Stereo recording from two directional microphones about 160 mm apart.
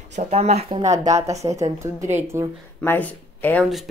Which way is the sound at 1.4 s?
20° right (ahead or behind).